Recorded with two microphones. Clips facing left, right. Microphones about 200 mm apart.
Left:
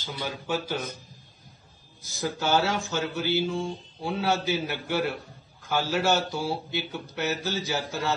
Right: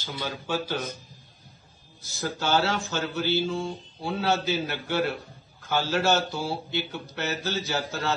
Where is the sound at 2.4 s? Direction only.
15° left (ahead or behind).